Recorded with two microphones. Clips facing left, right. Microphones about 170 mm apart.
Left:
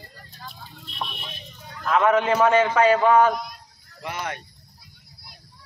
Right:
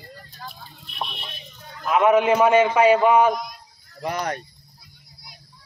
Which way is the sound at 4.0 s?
40° right (ahead or behind).